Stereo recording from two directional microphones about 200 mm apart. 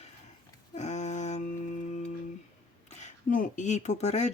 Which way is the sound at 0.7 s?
35° left (ahead or behind).